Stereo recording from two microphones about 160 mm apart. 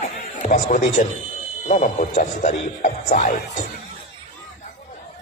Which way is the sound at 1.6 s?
50° left (ahead or behind).